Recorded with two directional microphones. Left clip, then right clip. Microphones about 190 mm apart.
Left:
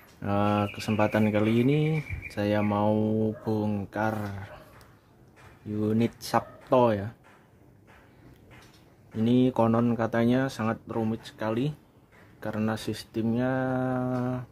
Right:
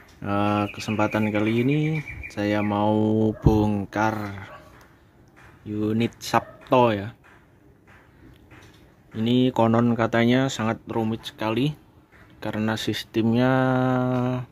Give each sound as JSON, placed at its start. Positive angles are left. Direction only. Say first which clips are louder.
{"t": 0.2, "sound": "speech", "louder": "right 3 dB", "side_deg": 0}
{"t": 5.8, "sound": "speech", "louder": "right 2 dB", "side_deg": -5}
{"t": 9.1, "sound": "speech", "louder": "right 3 dB", "side_deg": 0}